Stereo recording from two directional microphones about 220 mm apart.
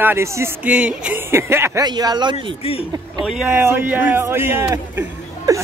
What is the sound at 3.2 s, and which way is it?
A man's voice, 5° right (ahead or behind).